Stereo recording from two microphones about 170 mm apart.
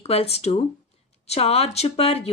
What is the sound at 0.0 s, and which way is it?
A woman's voice, 35° left (ahead or behind).